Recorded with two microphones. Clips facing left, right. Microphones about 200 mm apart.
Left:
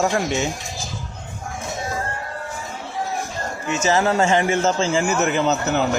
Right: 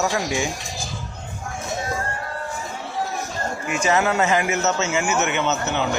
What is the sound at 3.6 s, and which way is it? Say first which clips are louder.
Speech: left 2 dB; 25° left (ahead or behind).